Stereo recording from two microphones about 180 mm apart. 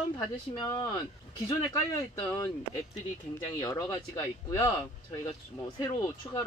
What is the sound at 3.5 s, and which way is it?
Speech, 20° left (ahead or behind).